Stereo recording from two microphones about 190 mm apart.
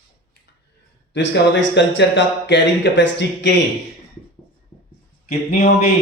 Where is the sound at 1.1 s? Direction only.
70° left (ahead or behind).